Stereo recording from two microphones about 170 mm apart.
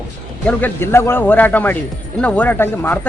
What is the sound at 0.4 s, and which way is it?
Speech, 10° left (ahead or behind).